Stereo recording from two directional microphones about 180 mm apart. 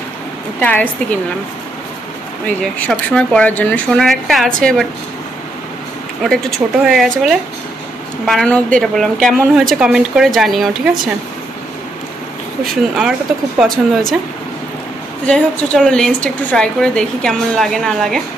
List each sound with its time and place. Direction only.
0.6 s speech: 10° left (ahead or behind)
2.4 s a woman's voice: 5° left (ahead or behind)
6.2 s a woman's voice: centre (ahead or behind)
12.6 s a woman's voice: 5° right (ahead or behind)
15.2 s a woman's voice: 5° left (ahead or behind)